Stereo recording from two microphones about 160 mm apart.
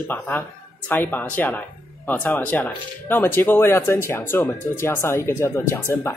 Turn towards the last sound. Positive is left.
turn(degrees=15)  # may be behind; listen again after turning